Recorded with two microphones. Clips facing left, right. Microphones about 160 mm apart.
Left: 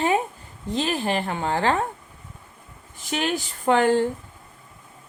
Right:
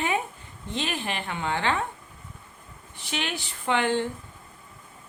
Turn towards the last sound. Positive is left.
turn(degrees=40)  # may be behind; listen again after turning